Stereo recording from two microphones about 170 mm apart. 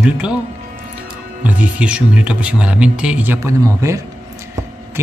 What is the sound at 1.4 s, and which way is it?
Speech, 10° right (ahead or behind).